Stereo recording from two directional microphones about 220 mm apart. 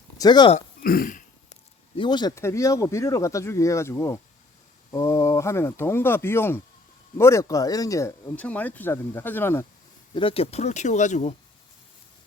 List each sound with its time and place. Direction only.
0.2 s speech: 20° left (ahead or behind)
0.5 s burping: 40° left (ahead or behind)
2.0 s speech: 20° left (ahead or behind)
10.2 s speech: 25° left (ahead or behind)